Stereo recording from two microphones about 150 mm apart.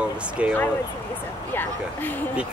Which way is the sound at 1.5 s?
10° left (ahead or behind).